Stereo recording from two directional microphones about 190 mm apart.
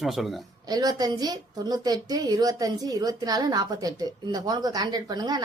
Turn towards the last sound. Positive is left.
turn(degrees=-20)  # may be behind; listen again after turning